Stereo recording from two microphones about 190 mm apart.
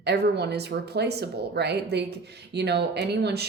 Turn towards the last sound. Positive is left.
turn(degrees=-60)  # may be behind; listen again after turning